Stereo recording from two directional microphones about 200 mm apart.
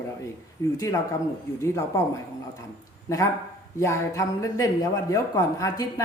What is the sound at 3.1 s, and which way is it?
Speech, 15° left (ahead or behind).